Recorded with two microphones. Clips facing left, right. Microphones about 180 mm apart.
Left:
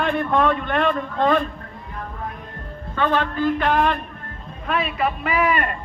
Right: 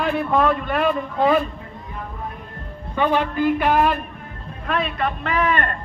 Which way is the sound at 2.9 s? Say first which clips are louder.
Right 1 dB; 10° right (ahead or behind).